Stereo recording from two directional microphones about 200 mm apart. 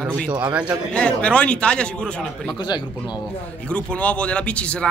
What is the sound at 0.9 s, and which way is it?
Speech, 5° left (ahead or behind).